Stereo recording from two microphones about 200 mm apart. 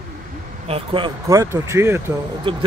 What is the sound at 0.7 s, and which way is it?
Speech, 25° right (ahead or behind).